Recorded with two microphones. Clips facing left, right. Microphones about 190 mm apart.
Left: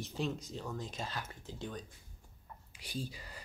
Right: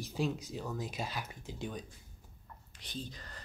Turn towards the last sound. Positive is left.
turn(degrees=10)  # may be behind; listen again after turning